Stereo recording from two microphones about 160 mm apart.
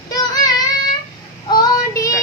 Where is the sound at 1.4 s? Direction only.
25° left (ahead or behind).